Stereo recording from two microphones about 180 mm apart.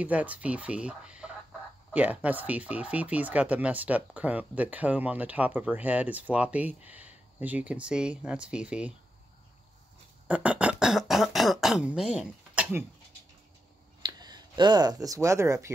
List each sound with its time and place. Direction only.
0.0 s speech: 10° right (ahead or behind)
10.2 s speech: 10° right (ahead or behind)
14.0 s speech: 25° right (ahead or behind)